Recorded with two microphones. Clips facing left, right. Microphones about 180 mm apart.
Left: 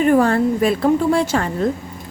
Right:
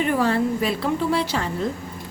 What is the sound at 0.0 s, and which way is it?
A woman's voice, 45° left (ahead or behind).